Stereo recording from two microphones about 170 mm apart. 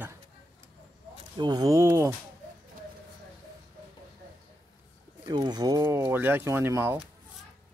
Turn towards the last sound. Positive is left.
turn(degrees=-15)  # may be behind; listen again after turning